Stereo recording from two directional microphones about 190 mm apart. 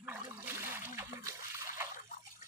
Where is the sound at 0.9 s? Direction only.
15° right (ahead or behind).